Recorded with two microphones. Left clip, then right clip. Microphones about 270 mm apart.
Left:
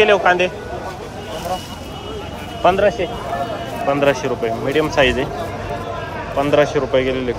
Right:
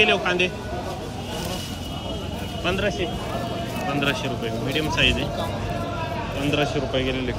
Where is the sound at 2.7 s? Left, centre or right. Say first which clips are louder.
Left 10 dB; centre.